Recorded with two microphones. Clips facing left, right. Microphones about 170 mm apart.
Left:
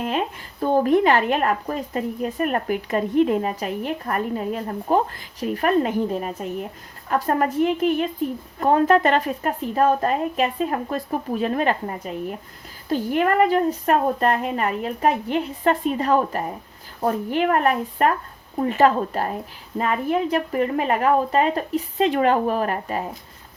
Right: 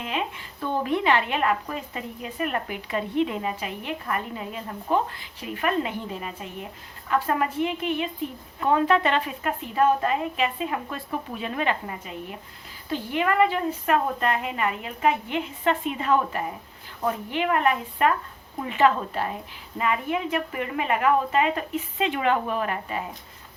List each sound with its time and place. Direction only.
0.0 s a woman's voice: 45° left (ahead or behind)